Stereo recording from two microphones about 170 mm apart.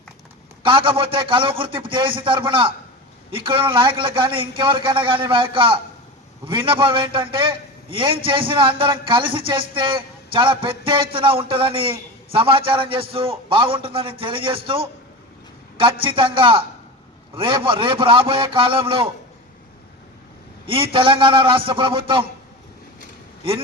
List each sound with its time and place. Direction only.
0.6 s a man's voice: 30° right (ahead or behind)
20.7 s a man's voice: 30° right (ahead or behind)